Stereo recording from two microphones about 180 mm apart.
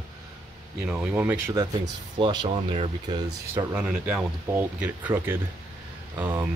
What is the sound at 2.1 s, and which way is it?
Speech, 25° right (ahead or behind).